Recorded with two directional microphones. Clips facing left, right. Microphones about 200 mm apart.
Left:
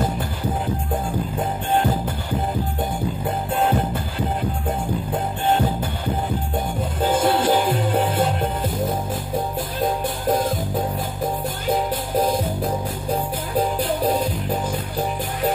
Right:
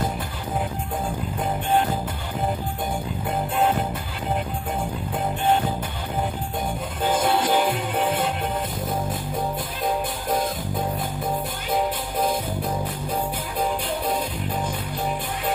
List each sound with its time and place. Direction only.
7.0 s music: 30° left (ahead or behind)